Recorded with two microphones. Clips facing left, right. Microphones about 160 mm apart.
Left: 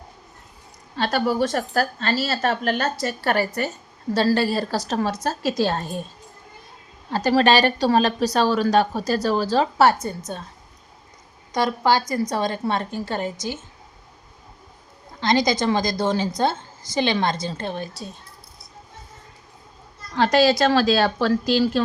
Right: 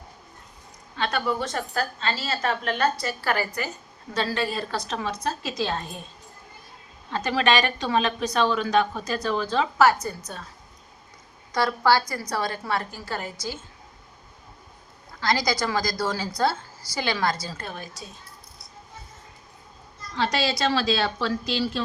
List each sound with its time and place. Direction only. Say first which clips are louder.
0.9 s a woman's voice: left 5 dB; 35° left (ahead or behind)
7.1 s a woman's voice: left 5 dB; 40° left (ahead or behind)
11.5 s a woman's voice: left 1 dB; 20° left (ahead or behind)
15.2 s a woman's voice: left 5 dB; 20° left (ahead or behind)
20.1 s speech: left 8 dB; 50° left (ahead or behind)